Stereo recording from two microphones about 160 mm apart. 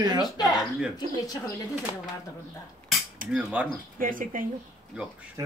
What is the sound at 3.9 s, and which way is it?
Speech, 60° right (ahead or behind).